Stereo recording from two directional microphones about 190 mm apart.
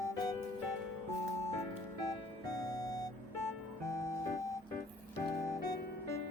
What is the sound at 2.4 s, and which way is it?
Music, 20° left (ahead or behind).